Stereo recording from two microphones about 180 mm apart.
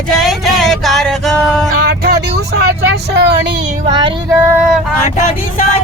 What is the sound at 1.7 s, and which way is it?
Vehicle, 60° right (ahead or behind).